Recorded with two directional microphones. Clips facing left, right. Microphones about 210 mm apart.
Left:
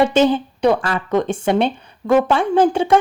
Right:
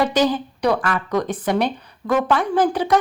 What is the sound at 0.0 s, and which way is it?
A woman's voice, 25° left (ahead or behind).